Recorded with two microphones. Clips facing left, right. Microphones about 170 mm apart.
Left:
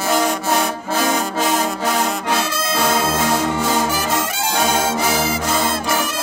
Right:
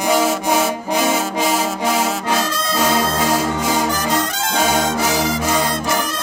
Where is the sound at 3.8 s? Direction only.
5° left (ahead or behind).